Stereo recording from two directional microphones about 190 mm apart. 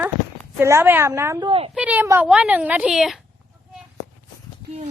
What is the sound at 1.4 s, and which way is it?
Speech, 30° right (ahead or behind).